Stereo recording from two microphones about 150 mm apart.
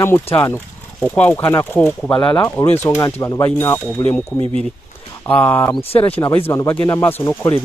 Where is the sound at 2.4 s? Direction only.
15° left (ahead or behind).